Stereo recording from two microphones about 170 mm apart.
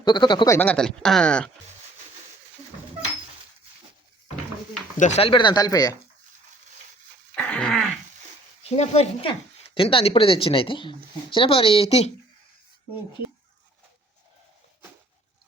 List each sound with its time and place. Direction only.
0.0 s speech: 25° left (ahead or behind); by 1.5 s 5° left (ahead or behind)
4.9 s speech: 45° left (ahead or behind); by 6.0 s 20° left (ahead or behind)
7.3 s a sound: 5° left (ahead or behind)
8.6 s speech: 40° left (ahead or behind)